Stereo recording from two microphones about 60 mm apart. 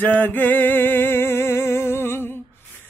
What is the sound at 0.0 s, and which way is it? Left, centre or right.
Music, left.